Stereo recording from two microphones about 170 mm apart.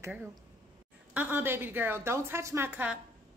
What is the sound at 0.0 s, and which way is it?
A woman's voice, 5° right (ahead or behind).